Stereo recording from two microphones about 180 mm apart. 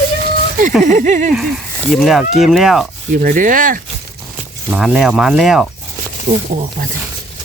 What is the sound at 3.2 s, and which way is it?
Speech, 50° right (ahead or behind).